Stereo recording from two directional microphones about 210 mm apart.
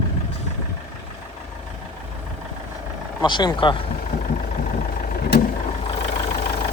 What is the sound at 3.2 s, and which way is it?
Speech, 20° left (ahead or behind).